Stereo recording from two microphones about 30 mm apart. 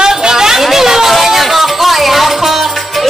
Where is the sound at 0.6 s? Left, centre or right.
Centre.